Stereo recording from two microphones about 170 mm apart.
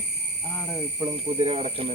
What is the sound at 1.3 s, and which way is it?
Speech, 35° right (ahead or behind).